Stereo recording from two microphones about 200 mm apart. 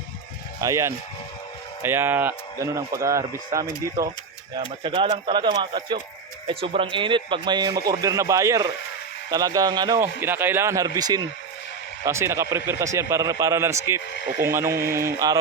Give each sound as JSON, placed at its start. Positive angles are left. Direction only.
{"t": 0.6, "sound": "speech", "side_deg": -15}